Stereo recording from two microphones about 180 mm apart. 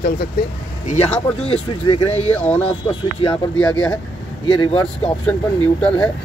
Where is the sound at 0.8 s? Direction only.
35° left (ahead or behind).